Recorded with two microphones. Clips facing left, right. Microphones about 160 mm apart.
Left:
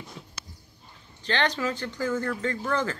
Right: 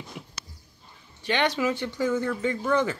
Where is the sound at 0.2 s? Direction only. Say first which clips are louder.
Right 3 dB; 15° right (ahead or behind).